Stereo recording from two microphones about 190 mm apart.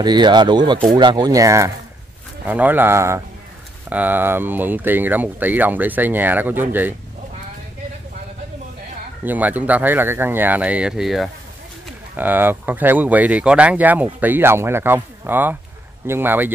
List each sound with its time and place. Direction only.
0.0 s speech: 25° right (ahead or behind)
9.2 s speech: 10° right (ahead or behind)